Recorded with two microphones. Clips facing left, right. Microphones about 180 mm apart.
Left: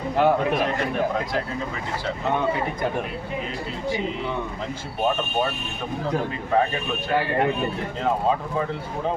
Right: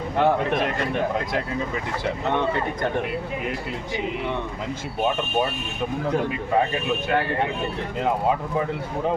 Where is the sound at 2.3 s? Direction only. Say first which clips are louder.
Left 1 dB; 5° left (ahead or behind).